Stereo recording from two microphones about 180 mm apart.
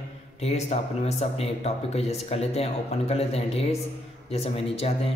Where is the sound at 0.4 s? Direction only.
35° left (ahead or behind).